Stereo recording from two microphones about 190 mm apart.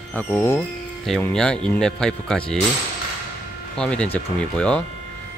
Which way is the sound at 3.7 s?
5° left (ahead or behind).